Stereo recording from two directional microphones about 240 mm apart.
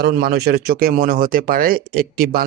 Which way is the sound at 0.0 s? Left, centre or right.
Right.